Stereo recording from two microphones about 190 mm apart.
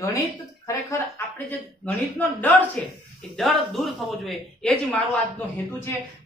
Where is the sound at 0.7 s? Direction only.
15° left (ahead or behind).